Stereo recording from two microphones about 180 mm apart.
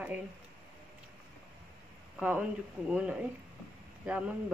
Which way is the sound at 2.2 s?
10° right (ahead or behind).